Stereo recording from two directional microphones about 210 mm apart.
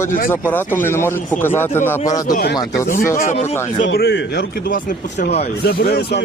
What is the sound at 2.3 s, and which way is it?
A man's voice, 50° left (ahead or behind).